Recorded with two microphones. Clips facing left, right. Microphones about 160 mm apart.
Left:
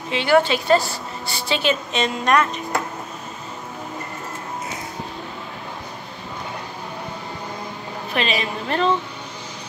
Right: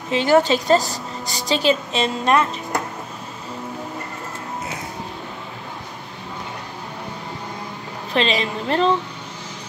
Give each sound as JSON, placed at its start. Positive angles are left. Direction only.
{"t": 0.1, "sound": "a woman's voice", "side_deg": -40}
{"t": 8.1, "sound": "a woman's voice", "side_deg": -30}